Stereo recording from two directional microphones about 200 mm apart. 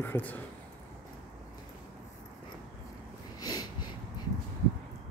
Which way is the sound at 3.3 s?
20° left (ahead or behind).